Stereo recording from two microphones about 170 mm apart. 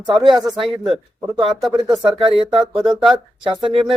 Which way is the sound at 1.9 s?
30° right (ahead or behind).